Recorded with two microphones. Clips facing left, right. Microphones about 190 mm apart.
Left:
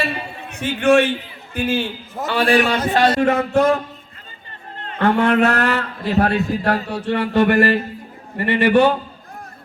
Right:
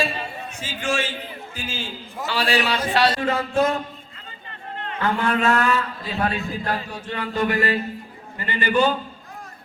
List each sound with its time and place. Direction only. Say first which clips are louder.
0.5 s a man's voice: left 12 dB; 65° left (ahead or behind)
4.9 s a man's voice: left 7 dB; 65° left (ahead or behind)